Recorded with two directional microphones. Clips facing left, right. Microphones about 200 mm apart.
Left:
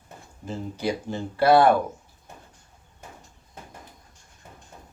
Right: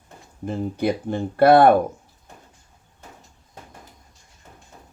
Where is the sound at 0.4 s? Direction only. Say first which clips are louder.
Right 5 dB; 55° right (ahead or behind).